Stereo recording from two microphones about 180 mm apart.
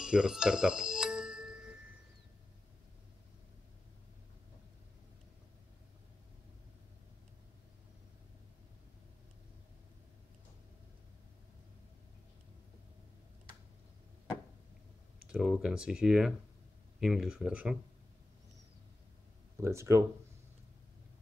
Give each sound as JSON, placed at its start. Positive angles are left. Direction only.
{"t": 0.0, "sound": "music", "side_deg": -5}
{"t": 15.2, "sound": "speech", "side_deg": -5}
{"t": 19.5, "sound": "speech", "side_deg": -15}